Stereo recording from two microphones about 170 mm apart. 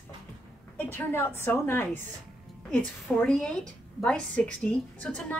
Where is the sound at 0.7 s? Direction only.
10° left (ahead or behind).